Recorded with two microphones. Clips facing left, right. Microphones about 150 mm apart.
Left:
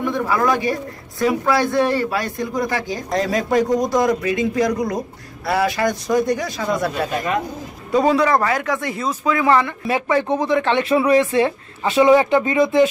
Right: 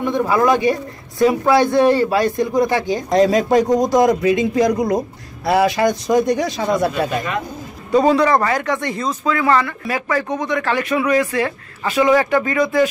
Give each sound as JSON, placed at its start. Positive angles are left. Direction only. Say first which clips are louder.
{"t": 0.0, "sound": "a man's voice", "louder": "right 3 dB", "side_deg": -20}
{"t": 7.9, "sound": "speech", "louder": "right 2 dB", "side_deg": 0}